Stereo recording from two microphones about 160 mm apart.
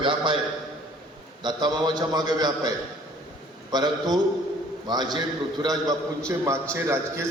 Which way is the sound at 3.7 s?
25° right (ahead or behind).